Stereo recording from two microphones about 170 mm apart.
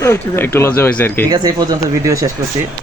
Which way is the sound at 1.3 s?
25° right (ahead or behind).